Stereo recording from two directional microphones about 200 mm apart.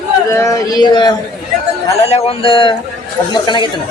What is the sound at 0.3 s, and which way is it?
A man's voice, 15° left (ahead or behind).